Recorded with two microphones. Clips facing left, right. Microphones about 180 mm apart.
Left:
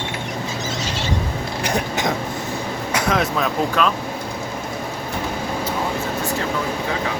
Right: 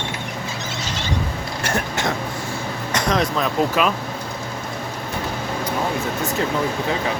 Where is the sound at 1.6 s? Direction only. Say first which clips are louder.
Left 1 dB; 15° left (ahead or behind).